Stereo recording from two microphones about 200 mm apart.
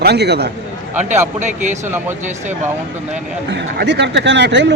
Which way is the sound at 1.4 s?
35° right (ahead or behind).